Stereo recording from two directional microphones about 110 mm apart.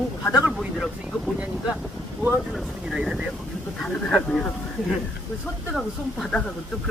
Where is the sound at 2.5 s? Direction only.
Centre (ahead or behind).